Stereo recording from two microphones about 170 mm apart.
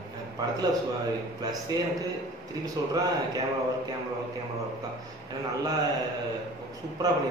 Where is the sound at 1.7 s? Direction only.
25° right (ahead or behind).